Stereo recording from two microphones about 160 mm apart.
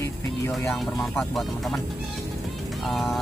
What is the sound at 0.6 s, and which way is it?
Speech, 5° left (ahead or behind).